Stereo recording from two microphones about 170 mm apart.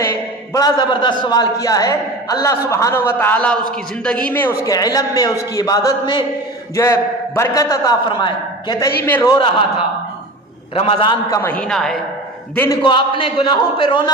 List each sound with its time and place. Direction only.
0.0 s a sound: 20° left (ahead or behind)
1.2 s a man's voice: 25° left (ahead or behind)
9.0 s a man's voice: 10° left (ahead or behind)
9.2 s a man's voice: 25° left (ahead or behind)
10.8 s a man's voice: 35° left (ahead or behind)
11.6 s a man's voice: centre (ahead or behind)
12.8 s a man's voice: 30° left (ahead or behind)